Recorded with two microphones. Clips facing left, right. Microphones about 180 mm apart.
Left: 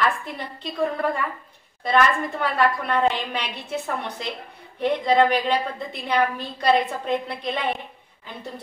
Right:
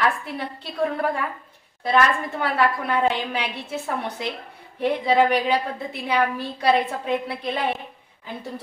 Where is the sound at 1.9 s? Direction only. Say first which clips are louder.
Even; 5° right (ahead or behind).